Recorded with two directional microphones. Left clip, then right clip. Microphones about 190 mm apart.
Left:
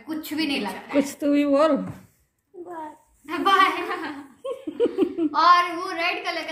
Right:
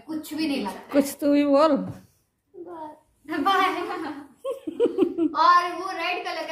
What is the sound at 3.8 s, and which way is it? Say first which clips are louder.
Speech: left 2 dB; 30° left (ahead or behind).